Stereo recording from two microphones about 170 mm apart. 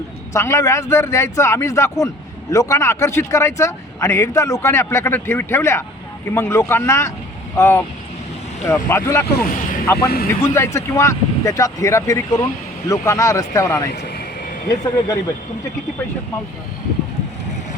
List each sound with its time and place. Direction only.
0.3 s speech: 15° left (ahead or behind)